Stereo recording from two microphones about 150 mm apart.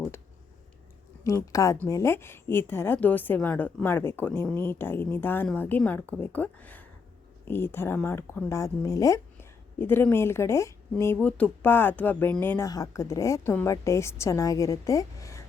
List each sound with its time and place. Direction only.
1.2 s speech: 20° left (ahead or behind)